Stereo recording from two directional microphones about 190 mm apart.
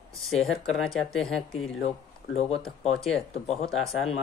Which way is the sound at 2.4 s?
35° left (ahead or behind).